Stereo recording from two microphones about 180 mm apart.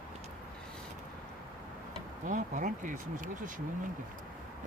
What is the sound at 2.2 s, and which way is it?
Speech, 45° right (ahead or behind).